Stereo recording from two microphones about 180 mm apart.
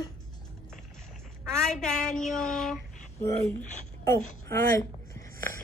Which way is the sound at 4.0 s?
15° left (ahead or behind).